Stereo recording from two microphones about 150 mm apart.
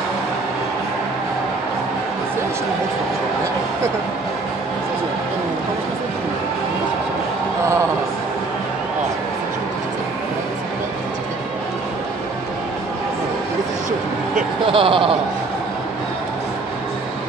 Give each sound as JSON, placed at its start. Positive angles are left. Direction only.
{"t": 14.7, "sound": "speech", "side_deg": -35}